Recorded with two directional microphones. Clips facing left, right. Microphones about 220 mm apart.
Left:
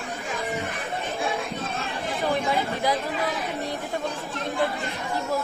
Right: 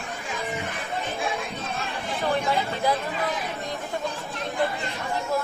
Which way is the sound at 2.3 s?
15° left (ahead or behind).